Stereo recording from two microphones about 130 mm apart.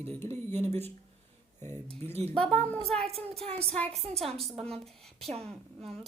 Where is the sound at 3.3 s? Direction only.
50° right (ahead or behind).